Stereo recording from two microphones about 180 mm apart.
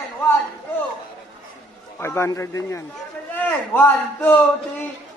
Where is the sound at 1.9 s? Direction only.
15° left (ahead or behind).